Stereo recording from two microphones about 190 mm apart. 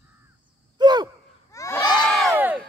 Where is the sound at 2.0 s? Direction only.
Centre (ahead or behind).